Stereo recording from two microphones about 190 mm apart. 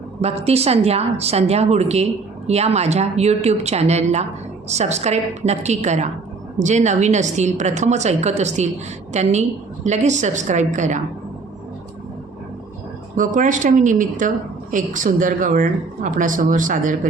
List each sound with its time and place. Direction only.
0.2 s a woman's voice: 35° right (ahead or behind)
13.1 s a woman's voice: 45° right (ahead or behind)